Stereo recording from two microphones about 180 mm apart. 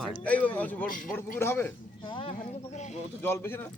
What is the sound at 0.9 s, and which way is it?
Speech, 50° left (ahead or behind).